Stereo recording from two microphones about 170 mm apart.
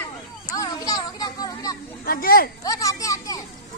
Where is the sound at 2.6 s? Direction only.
20° left (ahead or behind).